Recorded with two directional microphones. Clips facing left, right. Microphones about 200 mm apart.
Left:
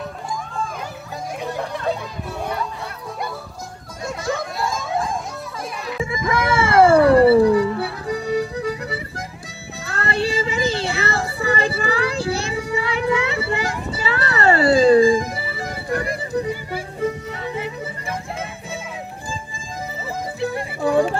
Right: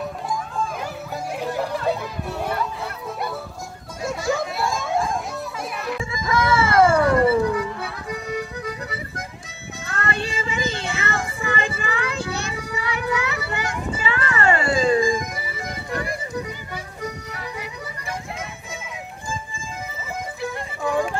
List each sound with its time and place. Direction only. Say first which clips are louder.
1.4 s speech: right 1 dB; 5° right (ahead or behind)
4.0 s a sound: right 1 dB; centre (ahead or behind)
6.1 s music: left 1 dB; 25° left (ahead or behind)
9.8 s child singing: left 5 dB; 35° left (ahead or behind)
17.0 s music: left 9 dB; 25° left (ahead or behind)
20.8 s a sound: left 5 dB; 35° left (ahead or behind)